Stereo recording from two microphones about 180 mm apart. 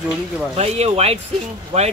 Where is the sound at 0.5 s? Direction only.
35° right (ahead or behind).